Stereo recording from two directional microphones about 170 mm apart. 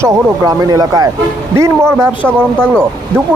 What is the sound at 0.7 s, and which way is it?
Speech, 20° right (ahead or behind).